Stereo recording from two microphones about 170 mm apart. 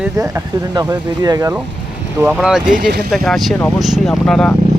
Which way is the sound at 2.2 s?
5° right (ahead or behind).